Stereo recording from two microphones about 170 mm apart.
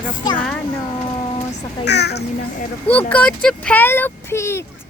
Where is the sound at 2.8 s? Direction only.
10° left (ahead or behind).